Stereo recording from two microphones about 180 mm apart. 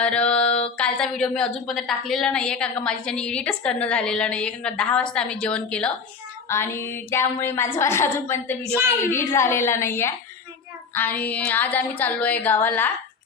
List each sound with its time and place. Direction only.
0.0 s a sound: 5° left (ahead or behind)
0.8 s a woman's voice: 5° left (ahead or behind)
8.7 s speech: 15° right (ahead or behind)
9.0 s a woman's voice: 15° left (ahead or behind)